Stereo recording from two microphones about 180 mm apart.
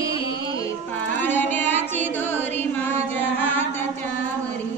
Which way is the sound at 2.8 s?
10° left (ahead or behind).